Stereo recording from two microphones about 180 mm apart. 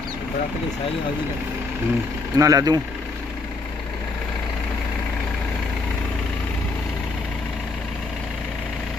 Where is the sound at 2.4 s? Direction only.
20° right (ahead or behind).